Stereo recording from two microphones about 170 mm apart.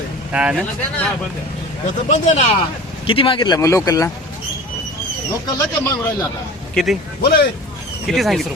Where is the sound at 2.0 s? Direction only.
45° left (ahead or behind).